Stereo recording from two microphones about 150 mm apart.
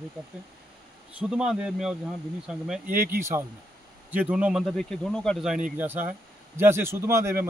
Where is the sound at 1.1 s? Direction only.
5° right (ahead or behind).